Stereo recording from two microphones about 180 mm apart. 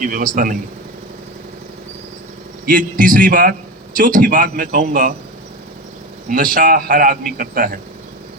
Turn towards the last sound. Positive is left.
turn(degrees=-50)  # may be behind; listen again after turning